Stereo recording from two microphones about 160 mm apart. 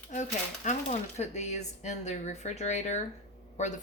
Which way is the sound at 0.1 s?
50° left (ahead or behind).